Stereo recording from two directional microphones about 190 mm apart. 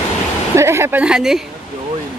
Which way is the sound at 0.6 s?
15° right (ahead or behind).